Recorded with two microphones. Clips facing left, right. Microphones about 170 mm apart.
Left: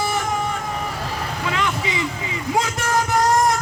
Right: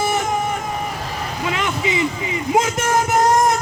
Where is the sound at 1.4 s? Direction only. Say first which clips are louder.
Right 2 dB; 20° right (ahead or behind).